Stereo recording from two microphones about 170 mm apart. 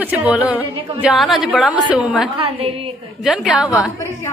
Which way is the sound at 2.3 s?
35° right (ahead or behind).